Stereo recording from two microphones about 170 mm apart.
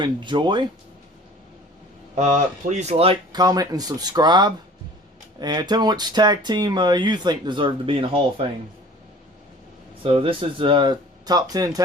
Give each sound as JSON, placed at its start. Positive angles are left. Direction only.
{"t": 0.0, "sound": "speech", "side_deg": -25}
{"t": 2.1, "sound": "speech", "side_deg": -45}
{"t": 3.3, "sound": "speech", "side_deg": -20}
{"t": 10.0, "sound": "speech", "side_deg": -30}